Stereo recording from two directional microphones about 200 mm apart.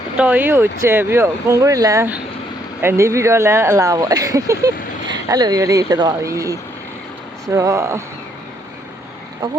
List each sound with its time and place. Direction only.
0.2 s speech: 10° right (ahead or behind)